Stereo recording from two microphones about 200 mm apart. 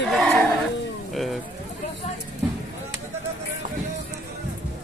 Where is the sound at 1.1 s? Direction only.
Centre (ahead or behind).